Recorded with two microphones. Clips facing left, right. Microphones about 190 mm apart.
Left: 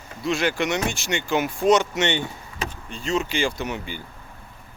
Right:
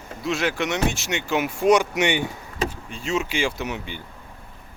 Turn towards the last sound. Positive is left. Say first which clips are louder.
# even
turn(degrees=0)  # may be behind; listen again after turning